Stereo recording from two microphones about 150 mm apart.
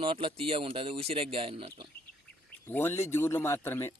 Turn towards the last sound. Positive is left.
turn(degrees=15)  # may be behind; listen again after turning